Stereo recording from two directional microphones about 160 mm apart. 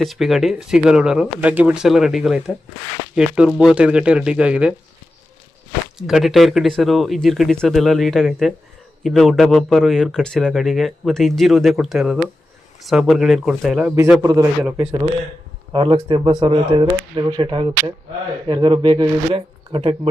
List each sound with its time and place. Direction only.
0.0 s speech: centre (ahead or behind)
6.0 s speech: 5° right (ahead or behind)
14.1 s speech: 15° right (ahead or behind)
15.7 s speech: 30° right (ahead or behind)